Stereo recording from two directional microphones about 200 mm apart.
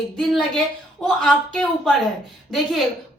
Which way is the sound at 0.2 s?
Centre (ahead or behind).